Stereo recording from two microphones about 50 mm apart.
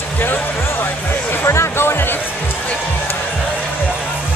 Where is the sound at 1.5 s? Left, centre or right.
Left.